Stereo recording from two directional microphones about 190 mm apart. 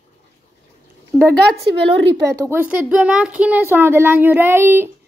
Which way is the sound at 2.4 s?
10° right (ahead or behind).